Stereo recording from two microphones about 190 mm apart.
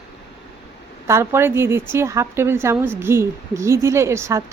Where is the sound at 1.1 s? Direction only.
15° right (ahead or behind).